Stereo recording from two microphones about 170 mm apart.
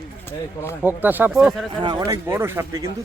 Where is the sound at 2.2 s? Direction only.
15° right (ahead or behind).